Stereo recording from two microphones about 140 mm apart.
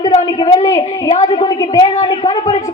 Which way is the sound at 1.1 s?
45° left (ahead or behind).